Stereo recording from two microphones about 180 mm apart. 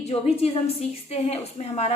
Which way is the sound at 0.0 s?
35° left (ahead or behind).